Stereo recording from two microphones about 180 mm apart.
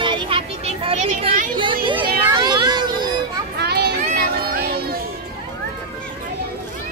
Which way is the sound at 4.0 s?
55° right (ahead or behind).